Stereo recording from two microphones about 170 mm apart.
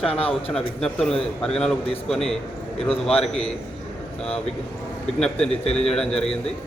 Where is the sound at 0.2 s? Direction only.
35° left (ahead or behind).